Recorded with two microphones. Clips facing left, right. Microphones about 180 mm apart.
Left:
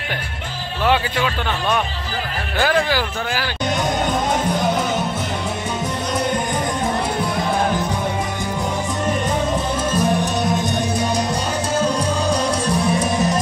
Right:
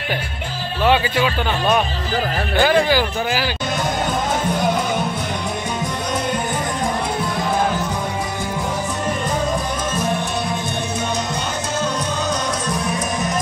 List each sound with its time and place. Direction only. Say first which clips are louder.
0.8 s speech: right 2 dB; 5° right (ahead or behind)
11.8 s music: left 2 dB; 30° left (ahead or behind)